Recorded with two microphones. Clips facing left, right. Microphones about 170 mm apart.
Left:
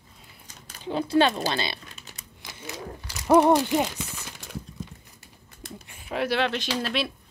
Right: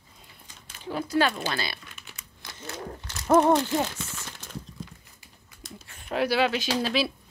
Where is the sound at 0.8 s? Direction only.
25° left (ahead or behind).